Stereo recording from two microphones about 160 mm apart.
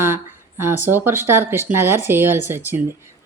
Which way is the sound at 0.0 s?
15° right (ahead or behind).